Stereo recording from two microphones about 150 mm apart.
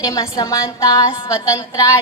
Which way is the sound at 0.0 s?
20° left (ahead or behind).